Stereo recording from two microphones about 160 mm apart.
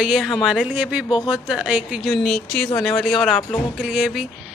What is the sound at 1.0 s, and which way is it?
Speech, 30° left (ahead or behind).